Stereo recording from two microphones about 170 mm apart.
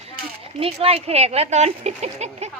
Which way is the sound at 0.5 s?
35° right (ahead or behind).